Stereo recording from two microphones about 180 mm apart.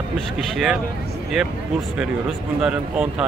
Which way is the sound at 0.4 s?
Centre (ahead or behind).